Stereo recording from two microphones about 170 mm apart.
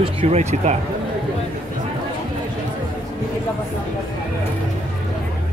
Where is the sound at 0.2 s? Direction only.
40° right (ahead or behind).